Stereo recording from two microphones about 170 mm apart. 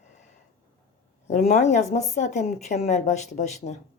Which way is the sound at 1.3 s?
60° left (ahead or behind).